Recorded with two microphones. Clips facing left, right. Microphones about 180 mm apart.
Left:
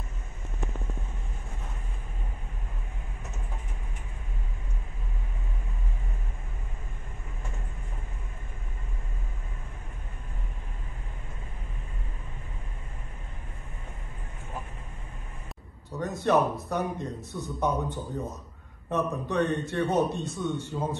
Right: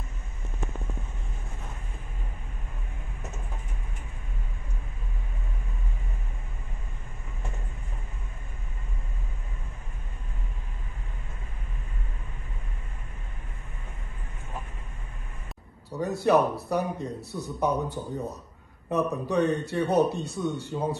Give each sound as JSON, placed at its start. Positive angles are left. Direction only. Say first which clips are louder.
{"t": 16.1, "sound": "a man's voice", "louder": "right 2 dB", "side_deg": -35}